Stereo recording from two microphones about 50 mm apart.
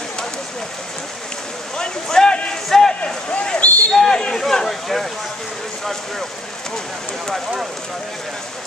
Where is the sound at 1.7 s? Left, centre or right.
Centre.